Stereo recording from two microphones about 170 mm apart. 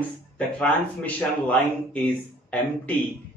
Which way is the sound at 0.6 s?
10° left (ahead or behind).